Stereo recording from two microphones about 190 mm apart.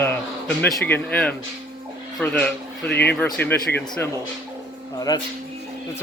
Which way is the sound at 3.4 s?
60° left (ahead or behind).